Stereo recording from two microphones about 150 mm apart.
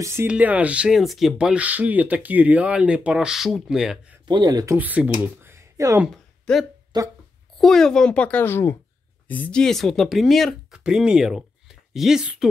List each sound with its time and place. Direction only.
0.0 s speech: 15° right (ahead or behind)
4.3 s speech: 25° right (ahead or behind)
4.7 s speech: 10° right (ahead or behind)
6.5 s speech: 5° left (ahead or behind)
6.9 s speech: 30° right (ahead or behind)
7.5 s a child's voice: centre (ahead or behind)